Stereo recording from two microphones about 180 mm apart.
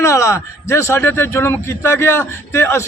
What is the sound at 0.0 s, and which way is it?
A man's voice, 15° left (ahead or behind).